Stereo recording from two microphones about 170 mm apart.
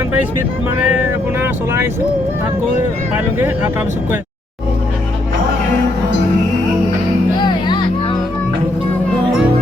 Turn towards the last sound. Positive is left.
turn(degrees=25)  # may be behind; listen again after turning